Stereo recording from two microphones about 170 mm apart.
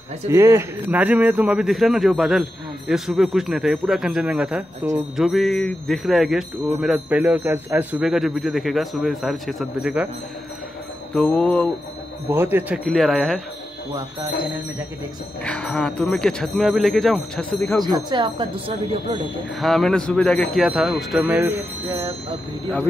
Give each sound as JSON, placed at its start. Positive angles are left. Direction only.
{"t": 0.3, "sound": "speech", "side_deg": -15}
{"t": 11.1, "sound": "mantra", "side_deg": 10}
{"t": 12.3, "sound": "speech", "side_deg": -15}
{"t": 15.4, "sound": "speech", "side_deg": 5}
{"t": 17.8, "sound": "speech", "side_deg": -25}
{"t": 19.6, "sound": "speech", "side_deg": 0}